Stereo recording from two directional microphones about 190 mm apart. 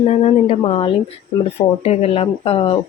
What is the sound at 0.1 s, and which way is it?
Speech, 35° left (ahead or behind).